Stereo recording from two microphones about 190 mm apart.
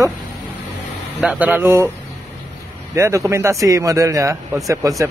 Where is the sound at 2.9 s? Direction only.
15° right (ahead or behind).